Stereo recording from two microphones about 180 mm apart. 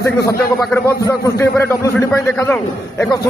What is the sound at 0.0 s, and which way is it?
A man's voice, 15° left (ahead or behind).